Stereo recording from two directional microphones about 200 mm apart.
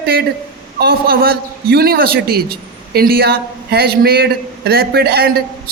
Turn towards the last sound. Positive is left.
turn(degrees=-50)  # may be behind; listen again after turning